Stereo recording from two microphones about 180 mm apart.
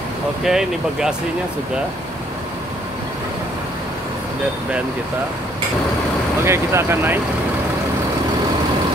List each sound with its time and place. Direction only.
0.4 s speech: 5° right (ahead or behind)
6.4 s speech: 15° right (ahead or behind)